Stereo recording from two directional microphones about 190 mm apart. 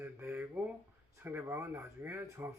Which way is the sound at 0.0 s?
10° right (ahead or behind).